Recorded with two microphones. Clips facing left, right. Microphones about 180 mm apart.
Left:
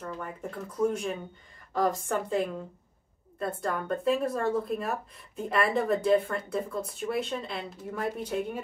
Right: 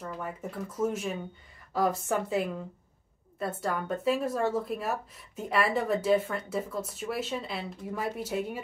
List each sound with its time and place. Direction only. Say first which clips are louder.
0.0 s speech: even; 5° right (ahead or behind)